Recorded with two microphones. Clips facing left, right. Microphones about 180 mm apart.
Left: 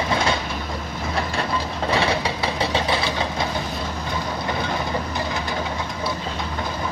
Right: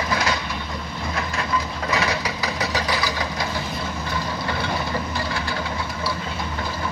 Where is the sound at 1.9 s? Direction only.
30° left (ahead or behind).